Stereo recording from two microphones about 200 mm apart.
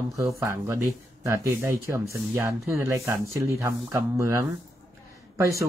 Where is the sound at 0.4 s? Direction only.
15° right (ahead or behind).